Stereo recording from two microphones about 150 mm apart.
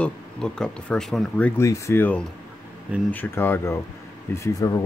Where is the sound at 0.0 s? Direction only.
5° left (ahead or behind).